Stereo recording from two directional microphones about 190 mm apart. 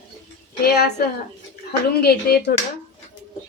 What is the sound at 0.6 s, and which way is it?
A woman's voice, 60° left (ahead or behind).